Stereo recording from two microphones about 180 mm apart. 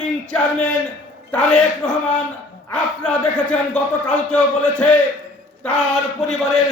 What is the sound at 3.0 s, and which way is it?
A man's voice, 5° left (ahead or behind).